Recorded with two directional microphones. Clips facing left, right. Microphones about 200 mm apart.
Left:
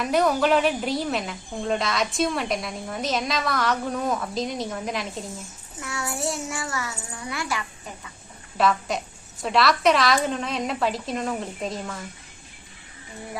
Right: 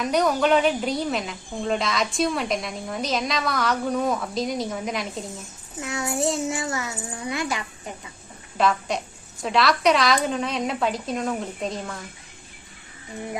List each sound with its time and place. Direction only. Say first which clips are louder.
0.0 s a woman's voice: even; centre (ahead or behind)
5.8 s a child's voice: right 4 dB; 20° right (ahead or behind)
8.5 s a woman's voice: even; centre (ahead or behind)